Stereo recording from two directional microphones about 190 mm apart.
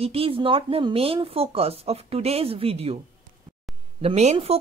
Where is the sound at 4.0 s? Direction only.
35° right (ahead or behind).